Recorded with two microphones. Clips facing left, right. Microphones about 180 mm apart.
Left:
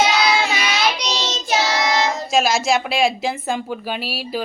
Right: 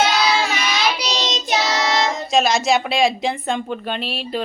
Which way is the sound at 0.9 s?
10° right (ahead or behind).